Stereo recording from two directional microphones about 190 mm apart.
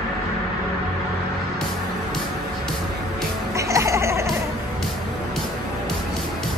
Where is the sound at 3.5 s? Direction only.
15° right (ahead or behind).